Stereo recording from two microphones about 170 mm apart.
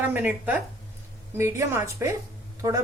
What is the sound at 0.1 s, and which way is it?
A woman's voice, 10° right (ahead or behind).